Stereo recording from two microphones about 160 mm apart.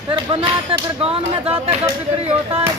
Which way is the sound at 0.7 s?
35° right (ahead or behind).